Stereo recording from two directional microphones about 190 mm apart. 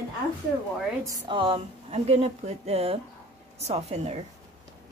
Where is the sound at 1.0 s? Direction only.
20° right (ahead or behind).